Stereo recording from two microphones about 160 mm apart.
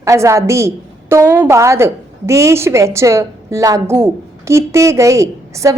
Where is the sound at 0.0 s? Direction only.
20° right (ahead or behind).